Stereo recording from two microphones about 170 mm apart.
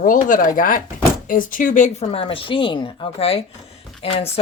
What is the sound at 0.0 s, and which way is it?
Speech, 50° left (ahead or behind).